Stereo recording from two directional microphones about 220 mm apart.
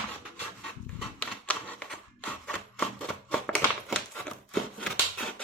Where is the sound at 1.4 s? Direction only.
5° left (ahead or behind).